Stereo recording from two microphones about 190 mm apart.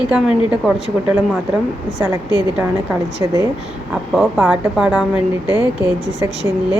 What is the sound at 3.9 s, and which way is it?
A woman's voice, centre (ahead or behind).